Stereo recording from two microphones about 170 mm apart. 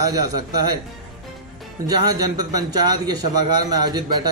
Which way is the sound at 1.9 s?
20° right (ahead or behind).